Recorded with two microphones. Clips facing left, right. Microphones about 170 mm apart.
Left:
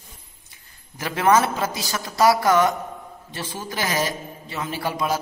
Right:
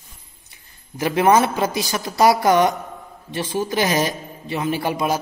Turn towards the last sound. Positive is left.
turn(degrees=-15)  # may be behind; listen again after turning